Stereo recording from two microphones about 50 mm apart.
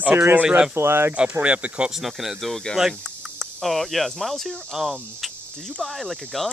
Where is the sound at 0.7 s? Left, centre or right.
Right.